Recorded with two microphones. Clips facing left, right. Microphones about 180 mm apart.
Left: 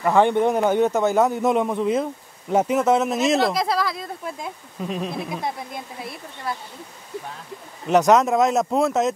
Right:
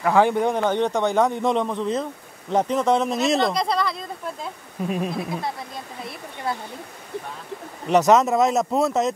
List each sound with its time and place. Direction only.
0.0 s a man's voice: centre (ahead or behind)
4.8 s speech: 10° right (ahead or behind)
7.9 s a man's voice: centre (ahead or behind)